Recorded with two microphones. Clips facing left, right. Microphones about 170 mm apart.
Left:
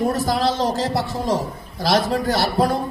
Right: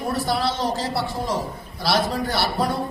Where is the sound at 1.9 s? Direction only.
45° left (ahead or behind).